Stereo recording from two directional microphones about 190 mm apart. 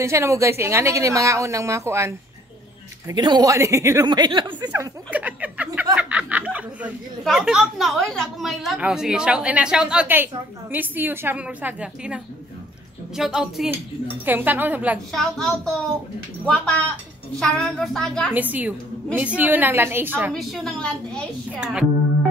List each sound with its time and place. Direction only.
0.0 s speech: 15° right (ahead or behind)
4.6 s a sound: 10° right (ahead or behind)
5.9 s speech: 5° right (ahead or behind)
15.0 s speech: centre (ahead or behind)
18.3 s speech: 10° right (ahead or behind)
20.3 s speech: centre (ahead or behind)